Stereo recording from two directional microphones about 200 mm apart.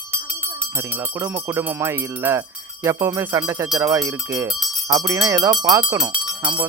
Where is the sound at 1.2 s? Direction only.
10° right (ahead or behind).